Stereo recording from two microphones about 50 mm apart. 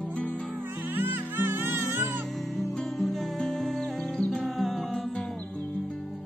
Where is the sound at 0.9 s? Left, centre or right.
Right.